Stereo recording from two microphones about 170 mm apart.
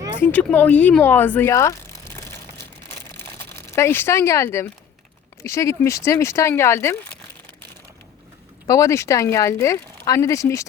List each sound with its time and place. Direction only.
0.2 s speech: 10° left (ahead or behind)
3.5 s speech: 15° left (ahead or behind)
8.6 s speech: 20° left (ahead or behind)